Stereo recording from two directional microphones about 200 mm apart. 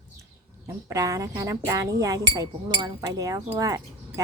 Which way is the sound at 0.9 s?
15° right (ahead or behind).